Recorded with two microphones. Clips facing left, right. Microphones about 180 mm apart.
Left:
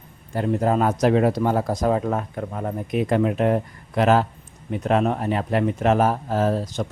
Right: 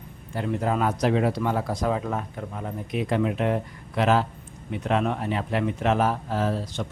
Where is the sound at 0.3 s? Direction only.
40° left (ahead or behind).